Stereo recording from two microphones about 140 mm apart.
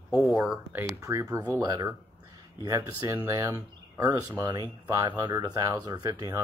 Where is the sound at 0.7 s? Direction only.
20° right (ahead or behind).